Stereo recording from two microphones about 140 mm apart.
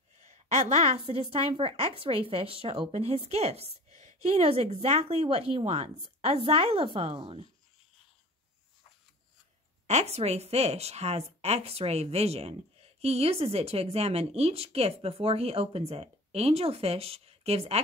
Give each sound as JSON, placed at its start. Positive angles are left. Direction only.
{"t": 0.2, "sound": "a sound", "side_deg": -55}
{"t": 0.9, "sound": "a woman's voice", "side_deg": -40}
{"t": 9.8, "sound": "a woman's voice", "side_deg": -50}